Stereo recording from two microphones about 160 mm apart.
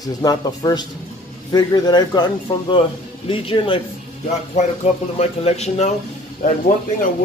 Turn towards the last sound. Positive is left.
turn(degrees=55)  # may be behind; listen again after turning